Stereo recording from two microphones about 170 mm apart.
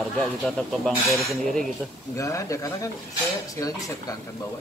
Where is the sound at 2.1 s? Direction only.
20° left (ahead or behind).